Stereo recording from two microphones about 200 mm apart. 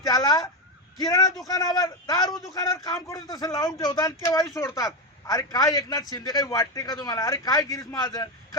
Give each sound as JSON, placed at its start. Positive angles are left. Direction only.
{"t": 0.0, "sound": "a man's voice", "side_deg": 20}